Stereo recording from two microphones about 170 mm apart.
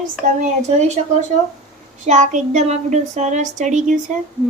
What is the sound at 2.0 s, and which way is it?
Speech, 45° right (ahead or behind).